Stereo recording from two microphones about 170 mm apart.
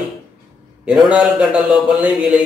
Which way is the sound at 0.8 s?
5° right (ahead or behind).